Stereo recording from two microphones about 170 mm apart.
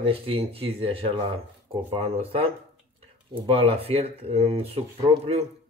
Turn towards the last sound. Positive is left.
turn(degrees=-35)  # may be behind; listen again after turning